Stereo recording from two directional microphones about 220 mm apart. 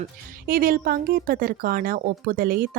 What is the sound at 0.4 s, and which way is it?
Speech, 40° right (ahead or behind).